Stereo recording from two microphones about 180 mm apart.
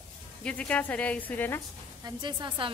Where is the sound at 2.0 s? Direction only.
25° right (ahead or behind).